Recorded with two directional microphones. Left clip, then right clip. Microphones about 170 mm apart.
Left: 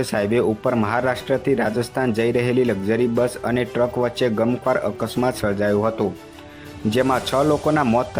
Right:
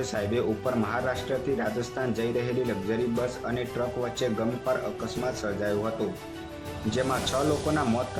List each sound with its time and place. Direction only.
0.0 s speech: 35° left (ahead or behind)
6.9 s speech: 35° left (ahead or behind)